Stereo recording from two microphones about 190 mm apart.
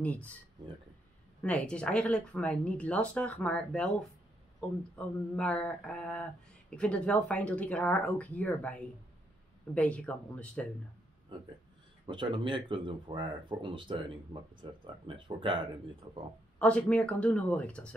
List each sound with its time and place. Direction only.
0.0 s speech: 10° left (ahead or behind)
1.4 s speech: 5° left (ahead or behind)
12.1 s speech: 25° right (ahead or behind)
16.5 s speech: 5° left (ahead or behind)